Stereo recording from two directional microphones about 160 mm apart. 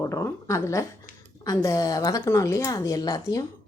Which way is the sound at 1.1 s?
55° left (ahead or behind).